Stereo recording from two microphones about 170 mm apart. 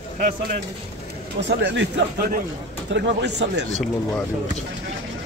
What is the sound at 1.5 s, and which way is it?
A man's voice, 90° right.